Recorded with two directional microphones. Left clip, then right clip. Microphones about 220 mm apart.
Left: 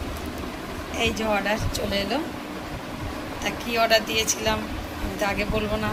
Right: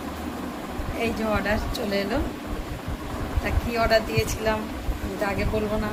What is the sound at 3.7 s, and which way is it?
Speech, 5° right (ahead or behind).